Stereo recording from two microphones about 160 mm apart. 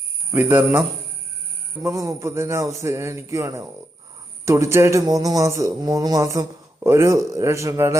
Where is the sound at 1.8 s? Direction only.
20° right (ahead or behind).